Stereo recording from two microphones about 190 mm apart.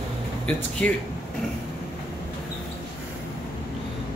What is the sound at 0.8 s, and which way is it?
Speech, 5° left (ahead or behind).